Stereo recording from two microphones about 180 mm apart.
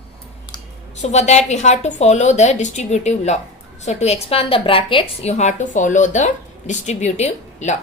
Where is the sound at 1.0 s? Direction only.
40° left (ahead or behind).